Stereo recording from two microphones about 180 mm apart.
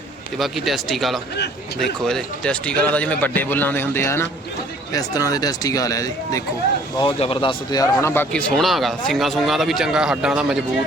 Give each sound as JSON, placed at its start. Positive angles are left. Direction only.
{"t": 0.3, "sound": "a man's voice", "side_deg": 0}
{"t": 7.0, "sound": "speech", "side_deg": 30}